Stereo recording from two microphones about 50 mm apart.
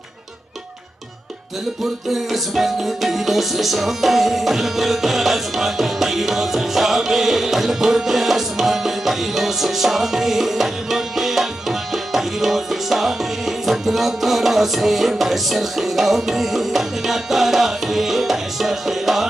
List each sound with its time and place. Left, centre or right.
2.0 s music: centre